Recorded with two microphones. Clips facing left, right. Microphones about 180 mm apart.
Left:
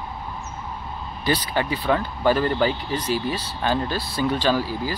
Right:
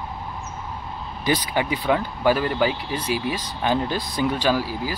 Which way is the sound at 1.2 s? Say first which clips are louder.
Right 1 dB; 15° right (ahead or behind).